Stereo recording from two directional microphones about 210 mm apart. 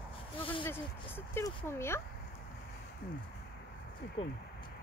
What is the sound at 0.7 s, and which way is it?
Speech, 10° left (ahead or behind).